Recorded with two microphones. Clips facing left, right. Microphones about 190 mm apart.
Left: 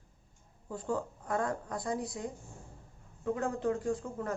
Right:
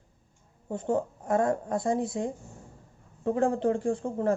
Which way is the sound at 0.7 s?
25° right (ahead or behind).